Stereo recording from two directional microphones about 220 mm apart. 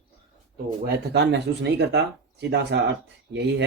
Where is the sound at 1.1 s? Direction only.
50° right (ahead or behind).